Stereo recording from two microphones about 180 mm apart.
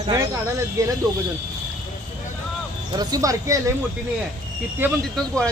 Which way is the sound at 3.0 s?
20° right (ahead or behind).